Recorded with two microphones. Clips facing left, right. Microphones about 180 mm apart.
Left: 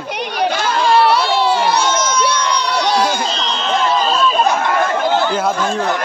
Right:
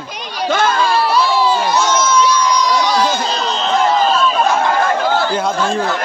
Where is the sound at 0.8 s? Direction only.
65° left (ahead or behind).